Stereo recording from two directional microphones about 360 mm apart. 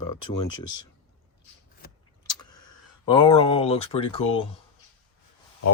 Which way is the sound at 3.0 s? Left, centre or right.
Centre.